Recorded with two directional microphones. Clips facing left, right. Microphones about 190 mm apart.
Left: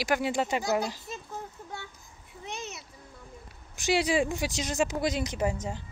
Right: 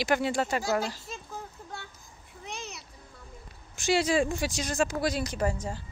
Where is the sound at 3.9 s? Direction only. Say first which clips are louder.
Right 1 dB; 15° left (ahead or behind).